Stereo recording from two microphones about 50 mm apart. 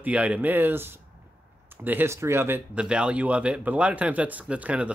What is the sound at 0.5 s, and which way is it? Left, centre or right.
Speech, right.